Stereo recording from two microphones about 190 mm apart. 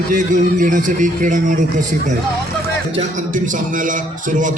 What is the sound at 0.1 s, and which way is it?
A man's voice, 40° right (ahead or behind).